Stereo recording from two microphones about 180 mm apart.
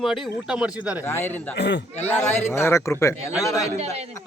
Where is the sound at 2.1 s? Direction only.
10° left (ahead or behind).